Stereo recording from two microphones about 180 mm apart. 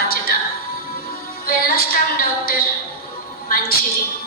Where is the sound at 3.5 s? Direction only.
55° left (ahead or behind).